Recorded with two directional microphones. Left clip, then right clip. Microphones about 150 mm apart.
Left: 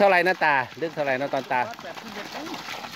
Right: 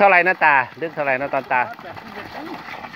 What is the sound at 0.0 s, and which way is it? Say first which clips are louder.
Speech: right 5 dB; 35° left (ahead or behind).